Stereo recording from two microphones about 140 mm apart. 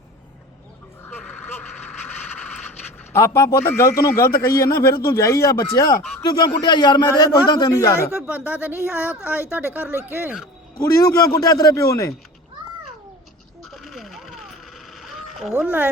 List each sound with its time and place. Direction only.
1.2 s vehicle: 5° left (ahead or behind)
3.1 s speech: 20° left (ahead or behind)
8.4 s a woman's voice: 10° right (ahead or behind)
10.8 s speech: 25° left (ahead or behind)
13.7 s a sound: centre (ahead or behind)